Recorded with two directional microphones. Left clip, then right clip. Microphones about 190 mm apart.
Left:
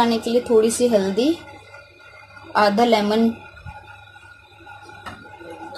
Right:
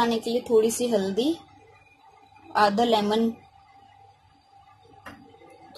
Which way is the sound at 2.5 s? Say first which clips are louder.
Left 5 dB; centre (ahead or behind).